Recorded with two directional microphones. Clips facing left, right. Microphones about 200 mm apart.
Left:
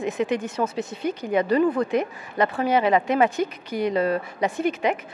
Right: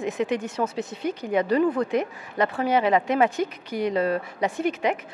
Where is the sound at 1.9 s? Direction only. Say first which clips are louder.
Left 1 dB; 10° left (ahead or behind).